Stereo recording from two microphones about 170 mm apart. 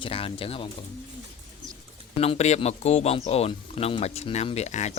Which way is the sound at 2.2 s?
40° left (ahead or behind).